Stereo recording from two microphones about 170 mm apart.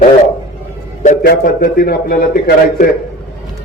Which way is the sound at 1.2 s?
65° left (ahead or behind).